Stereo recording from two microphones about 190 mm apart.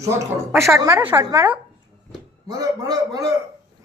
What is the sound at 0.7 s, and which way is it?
A woman's voice, 10° right (ahead or behind).